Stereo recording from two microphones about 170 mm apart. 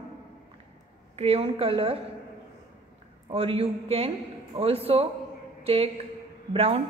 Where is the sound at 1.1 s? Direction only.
35° right (ahead or behind).